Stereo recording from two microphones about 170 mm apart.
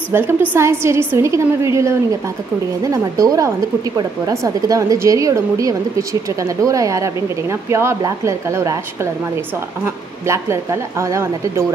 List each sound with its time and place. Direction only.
0.1 s a woman's voice: 10° right (ahead or behind)